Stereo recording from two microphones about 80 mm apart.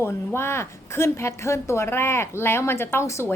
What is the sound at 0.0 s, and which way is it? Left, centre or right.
A woman's voice, left.